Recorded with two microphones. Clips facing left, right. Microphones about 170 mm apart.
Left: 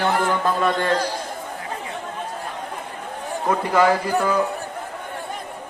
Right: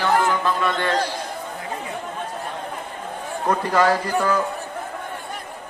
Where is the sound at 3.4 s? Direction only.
10° left (ahead or behind).